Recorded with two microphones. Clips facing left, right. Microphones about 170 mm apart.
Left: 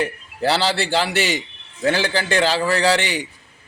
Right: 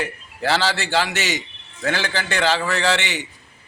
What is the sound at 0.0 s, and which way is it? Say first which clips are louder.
A man's voice: left 4 dB; 35° left (ahead or behind).